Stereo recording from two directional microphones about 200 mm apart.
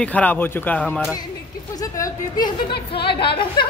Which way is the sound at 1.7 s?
15° left (ahead or behind).